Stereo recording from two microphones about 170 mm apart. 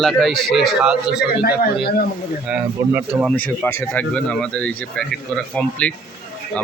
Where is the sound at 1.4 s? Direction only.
65° left (ahead or behind).